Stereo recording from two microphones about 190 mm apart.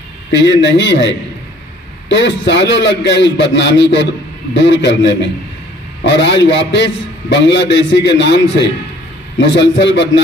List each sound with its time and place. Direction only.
0.3 s a man's voice: 70° left (ahead or behind)